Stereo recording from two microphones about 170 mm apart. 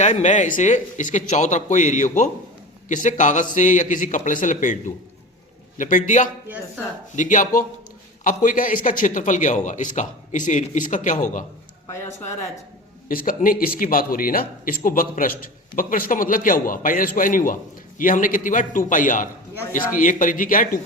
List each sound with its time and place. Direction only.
0.0 s a man's voice: 45° left (ahead or behind)
13.1 s a man's voice: 55° left (ahead or behind)